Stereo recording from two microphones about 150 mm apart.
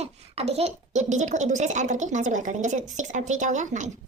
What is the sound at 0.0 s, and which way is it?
Speech, 45° right (ahead or behind).